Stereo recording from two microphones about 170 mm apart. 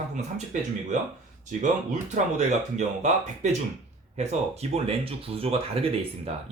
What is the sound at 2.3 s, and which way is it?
Speech, 45° right (ahead or behind).